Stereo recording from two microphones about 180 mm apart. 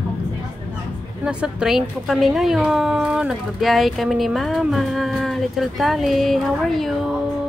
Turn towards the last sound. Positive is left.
turn(degrees=0)  # may be behind; listen again after turning